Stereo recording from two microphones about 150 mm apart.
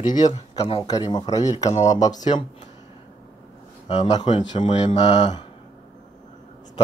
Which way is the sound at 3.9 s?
45° left (ahead or behind).